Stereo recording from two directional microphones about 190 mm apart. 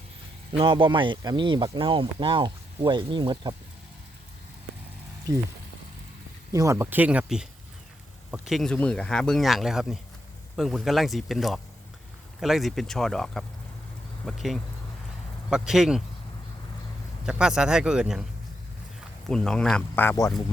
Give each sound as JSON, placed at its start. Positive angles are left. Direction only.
{"t": 0.5, "sound": "speech", "side_deg": -25}
{"t": 6.5, "sound": "speech", "side_deg": -15}
{"t": 17.2, "sound": "speech", "side_deg": -5}
{"t": 19.3, "sound": "speech", "side_deg": 5}